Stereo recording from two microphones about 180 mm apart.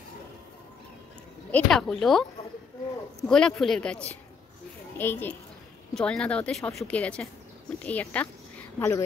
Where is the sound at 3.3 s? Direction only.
5° left (ahead or behind).